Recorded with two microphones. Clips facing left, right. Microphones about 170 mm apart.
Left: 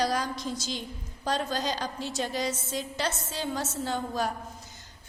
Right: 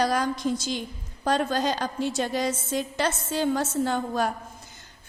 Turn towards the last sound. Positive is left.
turn(degrees=-55)  # may be behind; listen again after turning